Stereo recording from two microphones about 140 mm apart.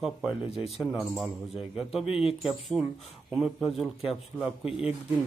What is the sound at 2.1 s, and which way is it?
Speech, 40° left (ahead or behind).